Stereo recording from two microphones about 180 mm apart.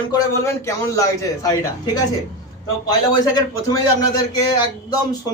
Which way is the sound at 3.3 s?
20° left (ahead or behind).